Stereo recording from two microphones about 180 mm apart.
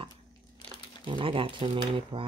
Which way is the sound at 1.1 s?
30° right (ahead or behind).